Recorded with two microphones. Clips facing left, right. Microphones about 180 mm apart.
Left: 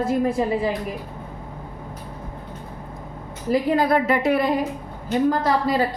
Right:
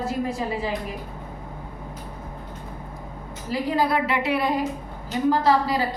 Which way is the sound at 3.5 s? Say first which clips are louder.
Left 4 dB; 55° left (ahead or behind).